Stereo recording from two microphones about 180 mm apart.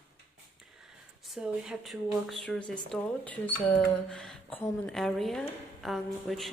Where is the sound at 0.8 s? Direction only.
Centre (ahead or behind).